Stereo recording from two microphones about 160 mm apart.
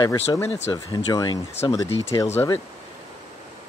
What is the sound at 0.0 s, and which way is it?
Speech, 25° left (ahead or behind).